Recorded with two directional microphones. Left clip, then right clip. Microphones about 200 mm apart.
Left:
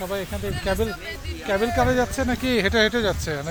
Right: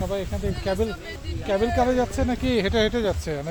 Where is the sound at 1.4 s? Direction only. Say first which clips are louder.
Left 1 dB; 5° left (ahead or behind).